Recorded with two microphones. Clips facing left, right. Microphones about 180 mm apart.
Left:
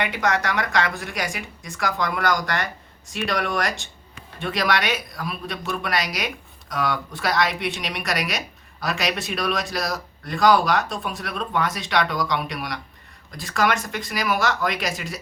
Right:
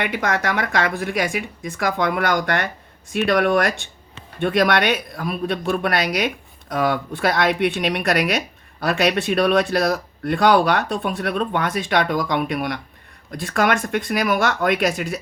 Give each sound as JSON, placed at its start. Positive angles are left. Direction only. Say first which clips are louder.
{"t": 0.0, "sound": "speech", "louder": "right 1 dB", "side_deg": -55}